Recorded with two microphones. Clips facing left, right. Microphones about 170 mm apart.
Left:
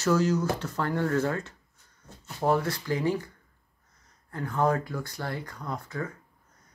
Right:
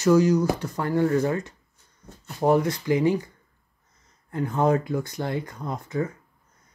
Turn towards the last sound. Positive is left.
turn(degrees=-20)  # may be behind; listen again after turning